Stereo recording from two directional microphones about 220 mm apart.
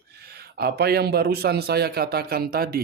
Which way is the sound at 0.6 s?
45° right (ahead or behind).